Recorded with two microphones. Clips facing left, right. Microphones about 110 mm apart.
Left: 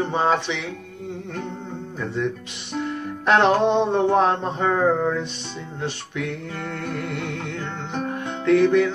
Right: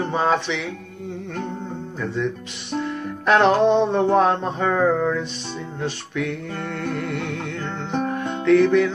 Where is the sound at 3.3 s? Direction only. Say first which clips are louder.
Right 1 dB; 15° left (ahead or behind).